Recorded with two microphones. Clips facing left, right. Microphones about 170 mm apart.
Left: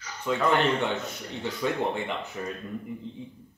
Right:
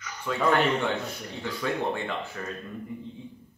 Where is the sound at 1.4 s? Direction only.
20° left (ahead or behind).